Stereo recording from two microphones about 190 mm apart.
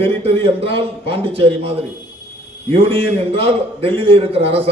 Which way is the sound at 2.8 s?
30° right (ahead or behind).